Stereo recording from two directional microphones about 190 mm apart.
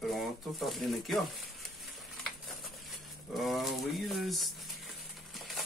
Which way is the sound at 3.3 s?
Centre (ahead or behind).